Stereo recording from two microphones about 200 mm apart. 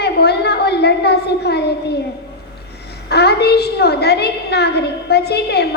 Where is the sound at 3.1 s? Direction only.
55° left (ahead or behind).